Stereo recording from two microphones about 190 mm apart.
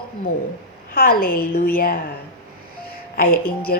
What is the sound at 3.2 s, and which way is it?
Speech, 50° left (ahead or behind).